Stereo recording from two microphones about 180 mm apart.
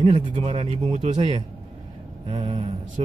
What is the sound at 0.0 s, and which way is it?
Mantra, 30° right (ahead or behind).